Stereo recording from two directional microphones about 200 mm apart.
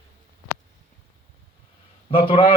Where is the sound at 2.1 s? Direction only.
25° left (ahead or behind).